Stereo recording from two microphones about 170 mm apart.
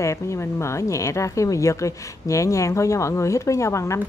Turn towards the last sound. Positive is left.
turn(degrees=15)  # may be behind; listen again after turning